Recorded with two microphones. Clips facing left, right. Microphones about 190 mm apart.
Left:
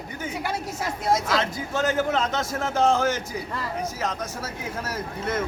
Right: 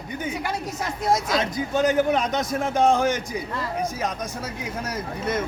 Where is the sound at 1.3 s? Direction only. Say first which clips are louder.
Right 2 dB; 20° right (ahead or behind).